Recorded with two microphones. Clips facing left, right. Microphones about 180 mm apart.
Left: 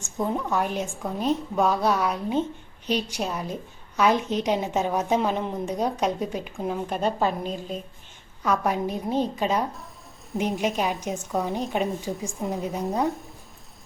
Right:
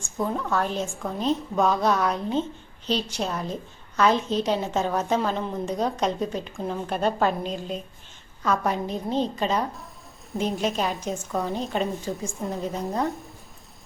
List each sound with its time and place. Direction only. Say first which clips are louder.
0.0 s a woman's voice: left 1 dB; 20° left (ahead or behind)
12.8 s speech: left 4 dB; centre (ahead or behind)